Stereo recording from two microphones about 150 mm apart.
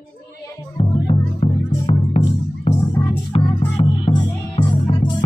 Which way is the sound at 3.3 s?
35° left (ahead or behind).